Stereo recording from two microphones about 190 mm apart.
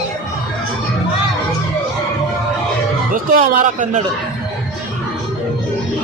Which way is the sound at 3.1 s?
45° right (ahead or behind).